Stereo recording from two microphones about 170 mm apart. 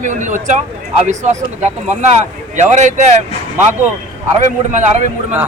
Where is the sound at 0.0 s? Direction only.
45° right (ahead or behind).